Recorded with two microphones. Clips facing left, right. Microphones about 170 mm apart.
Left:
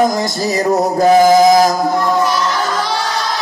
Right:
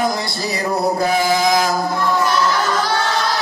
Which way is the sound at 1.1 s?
40° left (ahead or behind).